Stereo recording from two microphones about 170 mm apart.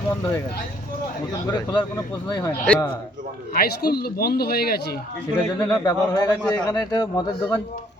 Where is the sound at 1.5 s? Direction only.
25° left (ahead or behind).